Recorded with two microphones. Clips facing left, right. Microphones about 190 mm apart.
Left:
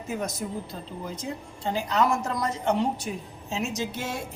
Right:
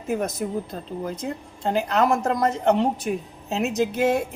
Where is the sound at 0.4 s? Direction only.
65° right (ahead or behind).